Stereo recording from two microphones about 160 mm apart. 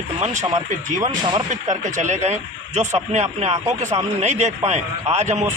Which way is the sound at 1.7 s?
50° right (ahead or behind).